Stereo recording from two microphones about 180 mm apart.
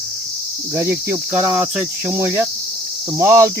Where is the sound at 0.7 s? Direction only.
10° right (ahead or behind).